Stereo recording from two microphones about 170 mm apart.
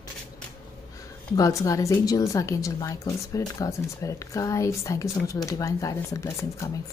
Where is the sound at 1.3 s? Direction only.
20° left (ahead or behind).